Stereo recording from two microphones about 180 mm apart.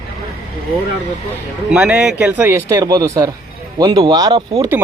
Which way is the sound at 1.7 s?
5° right (ahead or behind).